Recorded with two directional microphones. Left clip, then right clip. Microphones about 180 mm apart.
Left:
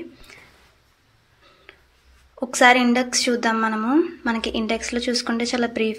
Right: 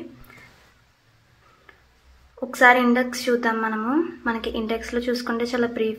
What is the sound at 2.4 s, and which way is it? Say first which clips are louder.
A woman's voice: left 1 dB; 30° left (ahead or behind).